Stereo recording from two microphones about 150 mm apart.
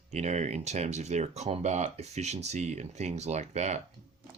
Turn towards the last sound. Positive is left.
turn(degrees=-50)  # may be behind; listen again after turning